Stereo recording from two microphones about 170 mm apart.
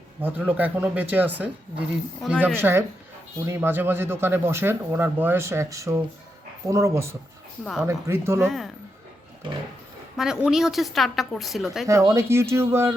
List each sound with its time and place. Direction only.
0.2 s a woman's voice: 10° right (ahead or behind)
2.6 s speech: 15° right (ahead or behind)
7.6 s a woman's voice: centre (ahead or behind)
7.9 s speech: 15° right (ahead or behind)
8.4 s a woman's voice: centre (ahead or behind)
9.4 s pig: 30° right (ahead or behind)
10.2 s a woman's voice: 5° right (ahead or behind)
11.9 s speech: 15° right (ahead or behind)